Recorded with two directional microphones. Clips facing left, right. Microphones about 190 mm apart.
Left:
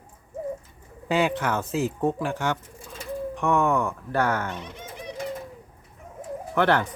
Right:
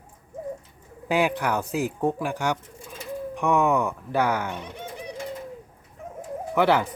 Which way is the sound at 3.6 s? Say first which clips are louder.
Right 1 dB; 5° right (ahead or behind).